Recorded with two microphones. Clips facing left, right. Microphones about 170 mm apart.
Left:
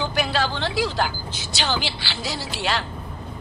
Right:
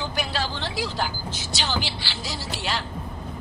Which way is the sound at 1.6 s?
70° left (ahead or behind).